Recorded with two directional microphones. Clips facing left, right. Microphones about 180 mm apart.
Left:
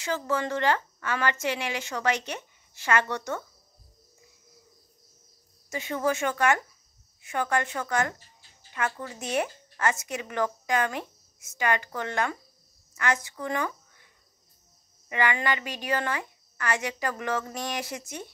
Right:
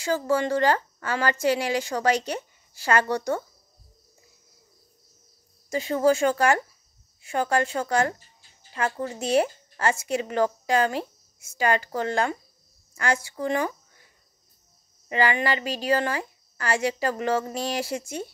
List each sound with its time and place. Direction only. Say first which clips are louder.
0.0 s speech: right 5 dB; 35° right (ahead or behind)
5.7 s a woman's voice: right 6 dB; 35° right (ahead or behind)
15.0 s speech: right 3 dB; 30° right (ahead or behind)